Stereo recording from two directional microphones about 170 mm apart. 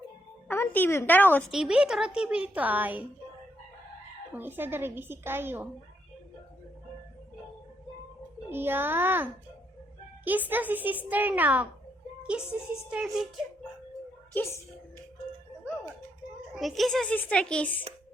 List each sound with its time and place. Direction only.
0.4 s a woman's voice: 15° left (ahead or behind)
1.5 s speech: 5° right (ahead or behind)
4.4 s a child's voice: 10° right (ahead or behind)
8.4 s a child's voice: 15° right (ahead or behind)
12.9 s speech: 5° right (ahead or behind)
14.3 s a woman's voice: 15° left (ahead or behind)
16.6 s speech: centre (ahead or behind)